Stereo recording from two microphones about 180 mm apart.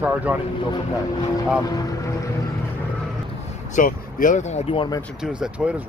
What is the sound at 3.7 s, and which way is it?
Speech, 45° left (ahead or behind).